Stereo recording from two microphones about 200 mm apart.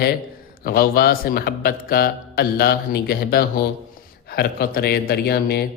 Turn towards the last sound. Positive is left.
turn(degrees=55)  # may be behind; listen again after turning